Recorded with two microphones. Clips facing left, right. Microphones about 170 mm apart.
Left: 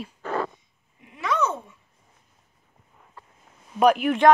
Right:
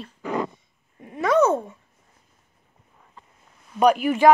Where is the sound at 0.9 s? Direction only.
50° right (ahead or behind).